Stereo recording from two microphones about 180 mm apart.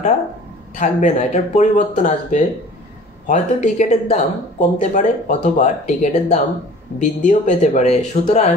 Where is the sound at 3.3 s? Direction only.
45° left (ahead or behind).